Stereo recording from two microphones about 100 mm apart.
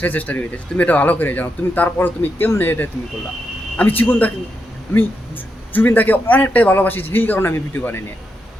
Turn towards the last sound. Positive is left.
turn(degrees=20)  # may be behind; listen again after turning